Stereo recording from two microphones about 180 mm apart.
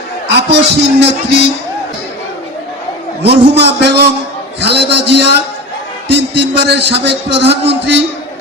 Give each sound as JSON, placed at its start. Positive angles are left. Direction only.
{"t": 0.3, "sound": "speech", "side_deg": -70}
{"t": 3.2, "sound": "speech", "side_deg": -70}